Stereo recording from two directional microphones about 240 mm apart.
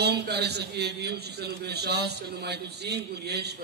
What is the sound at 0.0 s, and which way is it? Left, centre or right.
A man's voice, right.